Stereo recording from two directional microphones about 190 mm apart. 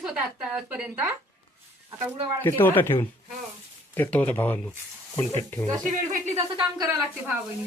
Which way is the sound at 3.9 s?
10° left (ahead or behind).